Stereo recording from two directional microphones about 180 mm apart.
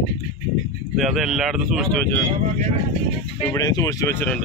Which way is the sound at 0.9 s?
Centre (ahead or behind).